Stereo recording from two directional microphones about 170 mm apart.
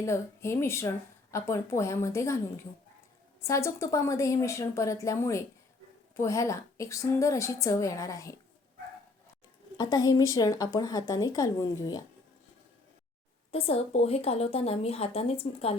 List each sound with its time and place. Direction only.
0.0 s a woman's voice: 15° left (ahead or behind)
3.4 s a woman's voice: 15° left (ahead or behind)
9.7 s a woman's voice: 20° left (ahead or behind)
13.5 s speech: 35° left (ahead or behind)